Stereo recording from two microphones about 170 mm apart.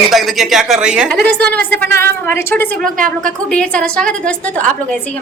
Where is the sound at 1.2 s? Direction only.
5° left (ahead or behind).